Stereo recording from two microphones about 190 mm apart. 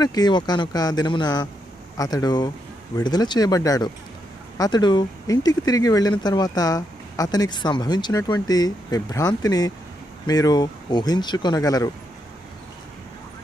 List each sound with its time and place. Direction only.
0.0 s speech: 20° left (ahead or behind)